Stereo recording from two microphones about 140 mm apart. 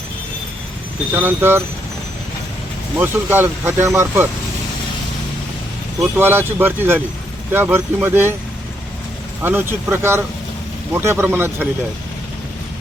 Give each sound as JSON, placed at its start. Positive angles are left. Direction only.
{"t": 1.1, "sound": "speech", "side_deg": -15}
{"t": 3.0, "sound": "speech", "side_deg": -15}
{"t": 6.1, "sound": "speech", "side_deg": -15}
{"t": 9.4, "sound": "speech", "side_deg": -15}